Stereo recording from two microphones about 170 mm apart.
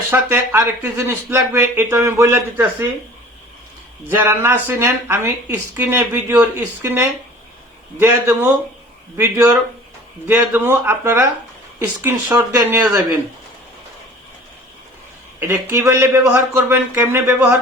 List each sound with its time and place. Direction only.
0.1 s speech: 15° right (ahead or behind)
4.1 s speech: 10° right (ahead or behind)
15.4 s speech: 15° right (ahead or behind)